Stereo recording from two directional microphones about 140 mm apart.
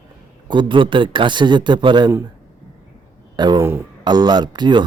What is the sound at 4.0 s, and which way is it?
Speech, 30° right (ahead or behind).